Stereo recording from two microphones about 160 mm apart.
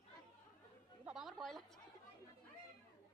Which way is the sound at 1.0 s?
5° right (ahead or behind).